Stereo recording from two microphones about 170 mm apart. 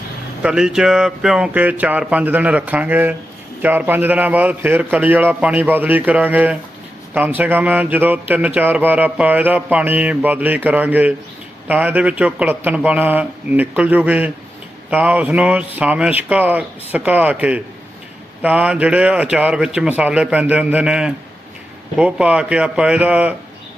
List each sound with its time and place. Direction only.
0.4 s speech: 5° right (ahead or behind)